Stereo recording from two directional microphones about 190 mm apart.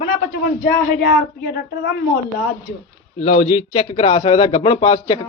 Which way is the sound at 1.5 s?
60° left (ahead or behind).